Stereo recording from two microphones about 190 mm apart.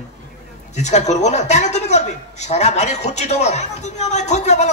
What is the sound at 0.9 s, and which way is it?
A man's voice, 35° left (ahead or behind).